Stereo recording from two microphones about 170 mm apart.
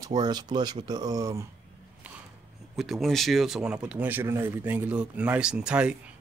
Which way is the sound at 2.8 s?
Centre (ahead or behind).